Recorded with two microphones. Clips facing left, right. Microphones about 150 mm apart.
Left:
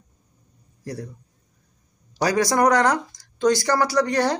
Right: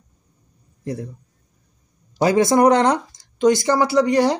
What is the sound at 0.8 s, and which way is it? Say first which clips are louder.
Speech: right 5 dB; 20° right (ahead or behind).